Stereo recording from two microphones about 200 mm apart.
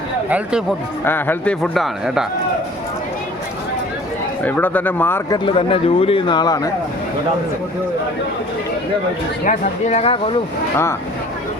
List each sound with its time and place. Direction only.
0.3 s speech: 5° right (ahead or behind)
1.0 s speech: 10° left (ahead or behind)
4.4 s speech: 10° left (ahead or behind)
5.5 s speech: 30° left (ahead or behind)
9.4 s speech: 35° left (ahead or behind)